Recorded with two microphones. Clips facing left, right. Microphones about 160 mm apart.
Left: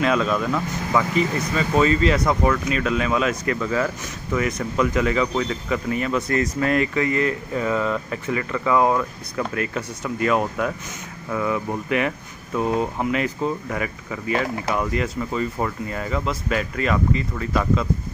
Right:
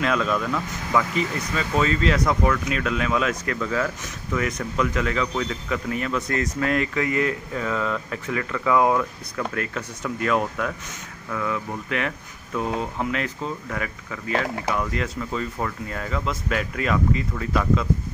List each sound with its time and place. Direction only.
0.0 s speech: centre (ahead or behind)